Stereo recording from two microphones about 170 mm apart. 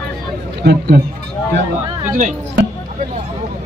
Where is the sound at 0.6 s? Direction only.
70° right (ahead or behind).